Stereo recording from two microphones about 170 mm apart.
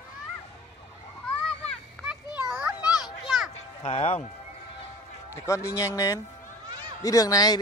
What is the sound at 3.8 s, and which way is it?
Music, 35° left (ahead or behind).